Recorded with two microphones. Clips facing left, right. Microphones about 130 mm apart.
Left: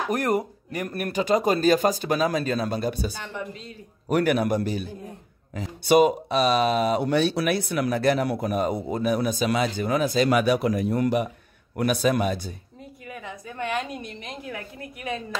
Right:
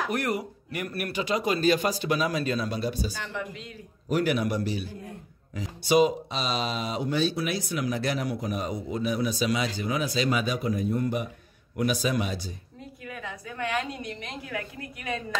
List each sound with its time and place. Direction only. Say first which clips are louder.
0.1 s speech: left 5 dB; 45° left (ahead or behind); by 11.3 s 70° left (ahead or behind)
11.7 s speech: left 4 dB; 55° left (ahead or behind)
13.1 s a woman's voice: left 1 dB; 20° left (ahead or behind)